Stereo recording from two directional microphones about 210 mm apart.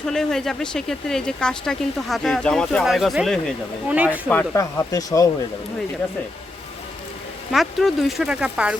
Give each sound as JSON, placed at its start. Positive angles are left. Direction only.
{"t": 0.0, "sound": "speech", "side_deg": 5}
{"t": 4.3, "sound": "speech", "side_deg": 10}
{"t": 7.5, "sound": "speech", "side_deg": 0}